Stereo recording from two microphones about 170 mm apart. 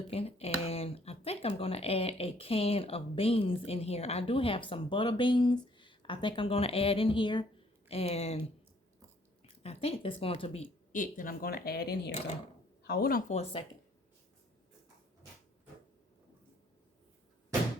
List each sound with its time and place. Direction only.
0.1 s speech: 35° left (ahead or behind)
9.6 s speech: 35° left (ahead or behind)
10.9 s speech: 50° left (ahead or behind)
13.3 s speech: 35° left (ahead or behind)